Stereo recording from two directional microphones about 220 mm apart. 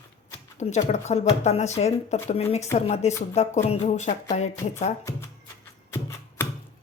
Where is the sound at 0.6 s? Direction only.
30° left (ahead or behind).